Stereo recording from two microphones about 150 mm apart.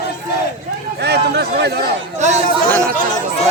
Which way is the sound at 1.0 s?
90° right.